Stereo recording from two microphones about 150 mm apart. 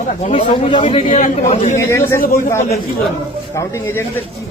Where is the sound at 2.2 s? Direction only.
65° left (ahead or behind).